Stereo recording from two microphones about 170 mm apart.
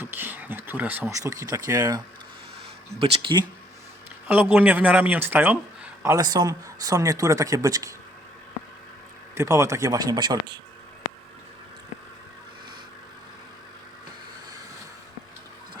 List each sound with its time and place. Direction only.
0.0 s speech: 10° right (ahead or behind)
3.0 s speech: 30° right (ahead or behind)
4.3 s speech: 10° right (ahead or behind)
9.3 s speech: 15° right (ahead or behind)